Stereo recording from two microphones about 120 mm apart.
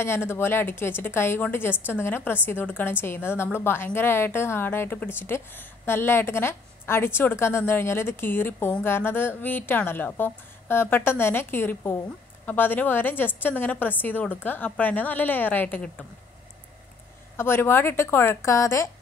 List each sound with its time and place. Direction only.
0.0 s a woman's voice: 20° left (ahead or behind)
17.4 s a woman's voice: 20° left (ahead or behind)